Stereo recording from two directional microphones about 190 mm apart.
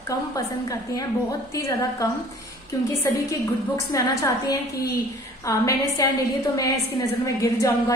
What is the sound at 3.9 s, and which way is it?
A woman's voice, 15° left (ahead or behind).